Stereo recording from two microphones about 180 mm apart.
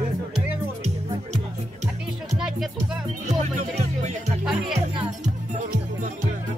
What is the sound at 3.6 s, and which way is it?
Music, 40° right (ahead or behind).